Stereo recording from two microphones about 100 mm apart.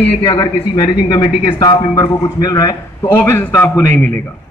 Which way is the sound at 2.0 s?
40° left (ahead or behind).